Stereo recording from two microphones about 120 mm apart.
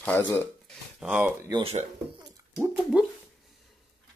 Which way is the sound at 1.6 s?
60° right (ahead or behind).